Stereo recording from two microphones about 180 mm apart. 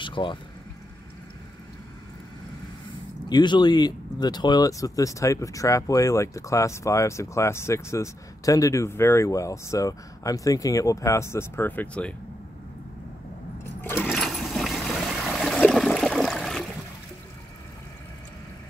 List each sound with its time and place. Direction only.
0.0 s a sound: 25° left (ahead or behind)
3.3 s speech: 25° left (ahead or behind); by 12.2 s 5° left (ahead or behind)
13.7 s water: 10° left (ahead or behind)